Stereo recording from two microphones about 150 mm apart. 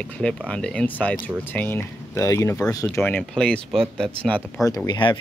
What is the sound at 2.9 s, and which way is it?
Speech, 10° left (ahead or behind).